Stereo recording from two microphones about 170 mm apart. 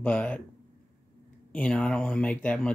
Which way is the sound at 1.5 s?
5° left (ahead or behind).